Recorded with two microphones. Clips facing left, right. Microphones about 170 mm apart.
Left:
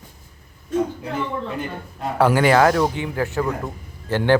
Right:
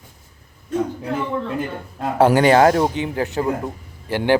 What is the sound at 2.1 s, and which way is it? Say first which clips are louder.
A man's voice: right 2 dB; 20° right (ahead or behind).